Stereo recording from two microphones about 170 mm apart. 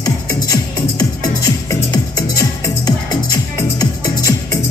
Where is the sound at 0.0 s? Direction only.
25° left (ahead or behind).